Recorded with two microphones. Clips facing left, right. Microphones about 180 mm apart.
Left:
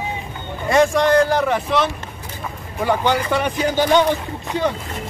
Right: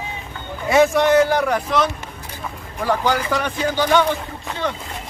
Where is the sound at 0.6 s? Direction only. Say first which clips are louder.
Even; 5° right (ahead or behind).